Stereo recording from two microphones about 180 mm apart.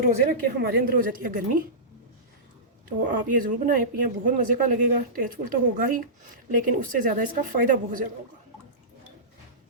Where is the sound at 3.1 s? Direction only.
50° right (ahead or behind).